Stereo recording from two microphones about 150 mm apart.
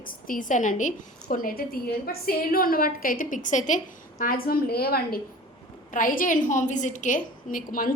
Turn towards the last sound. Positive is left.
turn(degrees=65)  # may be behind; listen again after turning